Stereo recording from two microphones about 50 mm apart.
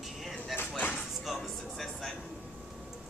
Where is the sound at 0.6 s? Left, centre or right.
Left.